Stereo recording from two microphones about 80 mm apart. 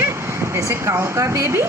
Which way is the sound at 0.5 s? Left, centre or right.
Right.